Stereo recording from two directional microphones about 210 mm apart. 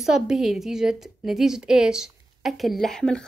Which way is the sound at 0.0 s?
Centre (ahead or behind).